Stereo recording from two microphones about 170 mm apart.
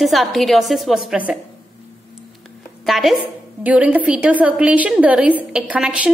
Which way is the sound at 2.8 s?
Centre (ahead or behind).